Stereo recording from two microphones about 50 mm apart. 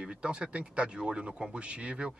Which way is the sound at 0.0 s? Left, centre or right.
Right.